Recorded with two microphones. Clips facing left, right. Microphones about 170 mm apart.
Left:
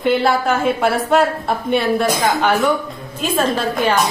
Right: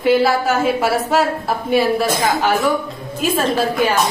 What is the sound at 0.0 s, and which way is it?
A woman's voice, 5° right (ahead or behind).